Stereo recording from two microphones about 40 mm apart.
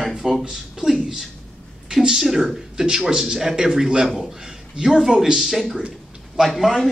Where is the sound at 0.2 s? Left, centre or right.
Centre.